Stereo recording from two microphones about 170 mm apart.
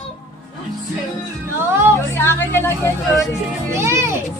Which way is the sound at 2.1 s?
15° left (ahead or behind).